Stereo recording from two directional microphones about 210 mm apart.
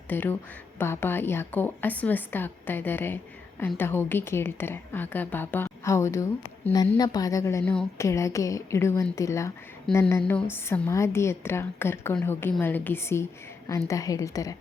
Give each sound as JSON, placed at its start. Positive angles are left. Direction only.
{"t": 0.1, "sound": "a woman's voice", "side_deg": 10}